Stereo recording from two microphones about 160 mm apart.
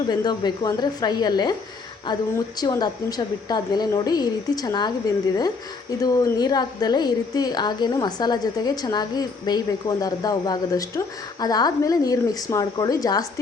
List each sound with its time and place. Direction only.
0.1 s a woman's voice: 25° left (ahead or behind)
2.6 s a woman's voice: 25° left (ahead or behind)